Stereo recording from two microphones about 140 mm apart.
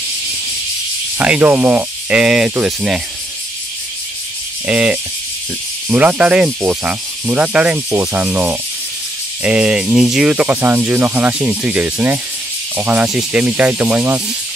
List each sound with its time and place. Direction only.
1.1 s speech: 10° right (ahead or behind)
4.6 s speech: 10° right (ahead or behind)